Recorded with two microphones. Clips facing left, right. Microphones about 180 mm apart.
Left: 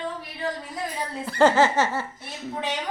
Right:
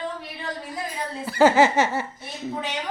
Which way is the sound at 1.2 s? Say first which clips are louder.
Right 2 dB; 5° right (ahead or behind).